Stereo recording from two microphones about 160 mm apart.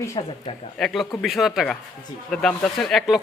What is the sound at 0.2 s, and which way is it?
Speech, 35° left (ahead or behind).